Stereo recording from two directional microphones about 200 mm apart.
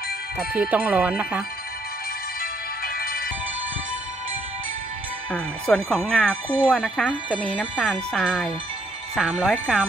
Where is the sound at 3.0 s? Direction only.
50° left (ahead or behind).